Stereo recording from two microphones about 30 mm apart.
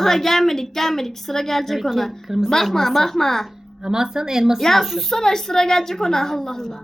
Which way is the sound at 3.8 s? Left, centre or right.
Centre.